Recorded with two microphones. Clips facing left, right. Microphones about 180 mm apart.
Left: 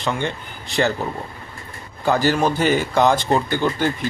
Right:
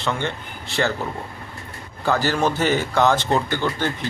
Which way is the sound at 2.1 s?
15° left (ahead or behind).